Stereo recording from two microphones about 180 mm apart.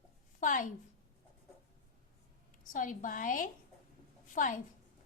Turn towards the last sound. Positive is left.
turn(degrees=45)  # may be behind; listen again after turning